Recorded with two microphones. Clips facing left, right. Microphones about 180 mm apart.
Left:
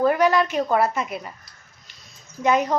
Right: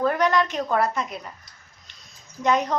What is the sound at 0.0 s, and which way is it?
A woman's voice, 5° left (ahead or behind).